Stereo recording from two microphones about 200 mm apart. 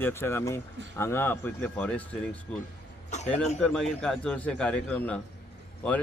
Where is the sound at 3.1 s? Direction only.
35° left (ahead or behind).